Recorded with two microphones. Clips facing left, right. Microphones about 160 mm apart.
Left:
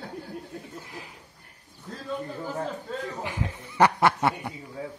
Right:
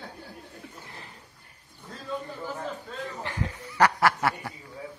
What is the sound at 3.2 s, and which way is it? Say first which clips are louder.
Snicker: left 1 dB; 15° left (ahead or behind).